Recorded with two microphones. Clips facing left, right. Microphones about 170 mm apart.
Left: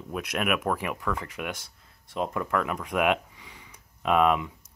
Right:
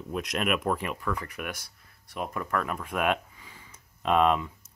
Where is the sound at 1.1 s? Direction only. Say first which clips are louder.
Left 2 dB; 20° left (ahead or behind).